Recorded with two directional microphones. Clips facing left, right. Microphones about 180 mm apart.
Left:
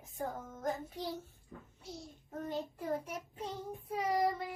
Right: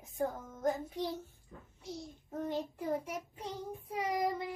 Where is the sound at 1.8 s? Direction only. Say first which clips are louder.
Right 5 dB; 20° right (ahead or behind).